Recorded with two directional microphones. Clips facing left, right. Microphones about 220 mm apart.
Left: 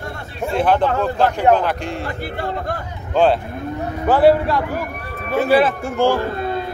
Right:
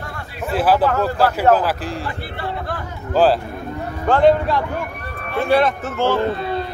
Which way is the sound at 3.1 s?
Centre (ahead or behind).